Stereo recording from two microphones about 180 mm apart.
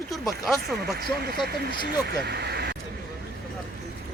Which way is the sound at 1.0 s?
60° right (ahead or behind).